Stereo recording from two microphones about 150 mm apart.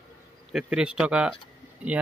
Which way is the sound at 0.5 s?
5° right (ahead or behind).